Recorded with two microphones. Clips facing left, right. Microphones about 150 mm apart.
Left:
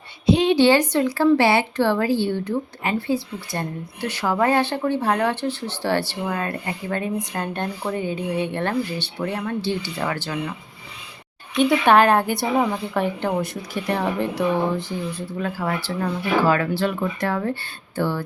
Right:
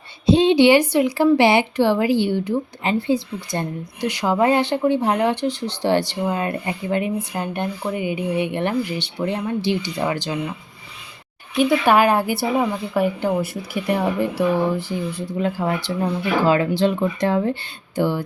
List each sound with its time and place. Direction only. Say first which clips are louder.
0.3 s speech: right 3 dB; 25° right (ahead or behind)
0.5 s speech: right 2 dB; 15° right (ahead or behind)
11.5 s speech: even; 5° right (ahead or behind)
15.4 s speech: right 4 dB; 20° right (ahead or behind)